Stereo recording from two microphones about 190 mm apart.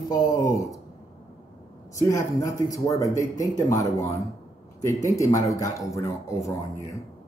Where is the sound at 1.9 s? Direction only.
15° left (ahead or behind).